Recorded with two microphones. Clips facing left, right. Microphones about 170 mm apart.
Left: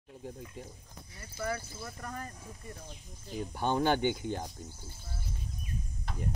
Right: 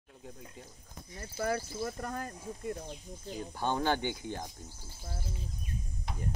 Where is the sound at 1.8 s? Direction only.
35° right (ahead or behind).